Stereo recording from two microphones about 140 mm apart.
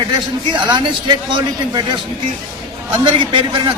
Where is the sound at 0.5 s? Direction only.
30° right (ahead or behind).